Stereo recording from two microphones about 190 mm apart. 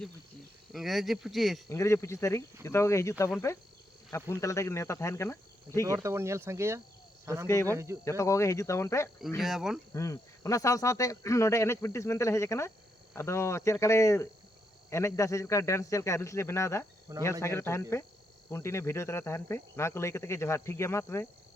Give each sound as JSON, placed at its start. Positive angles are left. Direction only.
{"t": 0.7, "sound": "speech", "side_deg": 0}
{"t": 1.7, "sound": "speech", "side_deg": 15}
{"t": 4.4, "sound": "speech", "side_deg": 15}
{"t": 5.8, "sound": "speech", "side_deg": -15}
{"t": 7.4, "sound": "speech", "side_deg": 15}
{"t": 7.7, "sound": "speech", "side_deg": -15}
{"t": 8.0, "sound": "speech", "side_deg": 15}
{"t": 9.4, "sound": "speech", "side_deg": 0}
{"t": 9.9, "sound": "speech", "side_deg": 15}
{"t": 17.1, "sound": "speech", "side_deg": -20}
{"t": 17.4, "sound": "speech", "side_deg": 15}